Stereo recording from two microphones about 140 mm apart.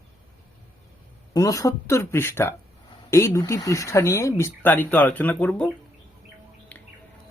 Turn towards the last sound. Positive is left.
turn(degrees=10)  # may be behind; listen again after turning